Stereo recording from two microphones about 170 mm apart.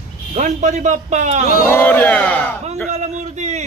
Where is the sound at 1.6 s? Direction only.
10° left (ahead or behind).